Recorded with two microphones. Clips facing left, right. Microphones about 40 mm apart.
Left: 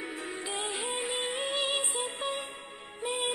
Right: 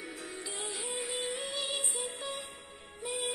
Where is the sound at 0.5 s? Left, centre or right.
Left.